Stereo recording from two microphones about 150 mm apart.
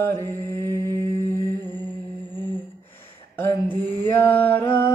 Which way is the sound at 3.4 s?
15° left (ahead or behind).